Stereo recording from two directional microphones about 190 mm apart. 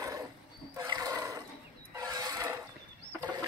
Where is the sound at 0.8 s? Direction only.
20° right (ahead or behind).